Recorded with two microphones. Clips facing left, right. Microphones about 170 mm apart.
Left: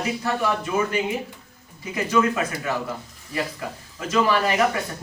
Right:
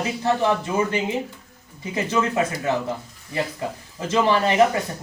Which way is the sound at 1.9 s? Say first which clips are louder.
Left 1 dB; 25° right (ahead or behind).